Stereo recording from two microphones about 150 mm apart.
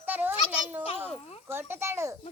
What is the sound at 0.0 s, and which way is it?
Children playing, 10° right (ahead or behind).